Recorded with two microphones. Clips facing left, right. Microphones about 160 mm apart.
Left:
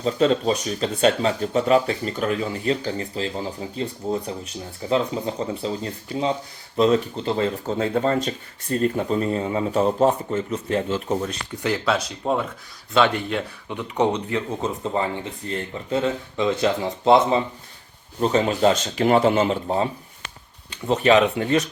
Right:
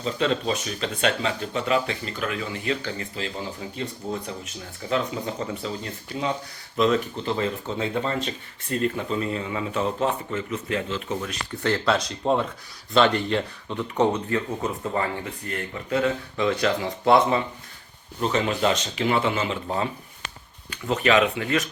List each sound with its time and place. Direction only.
0.0 s speech: 40° left (ahead or behind)
11.6 s speech: 10° left (ahead or behind)
18.2 s speech: 35° left (ahead or behind)